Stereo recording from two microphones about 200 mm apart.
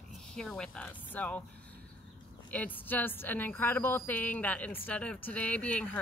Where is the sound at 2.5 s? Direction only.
10° left (ahead or behind).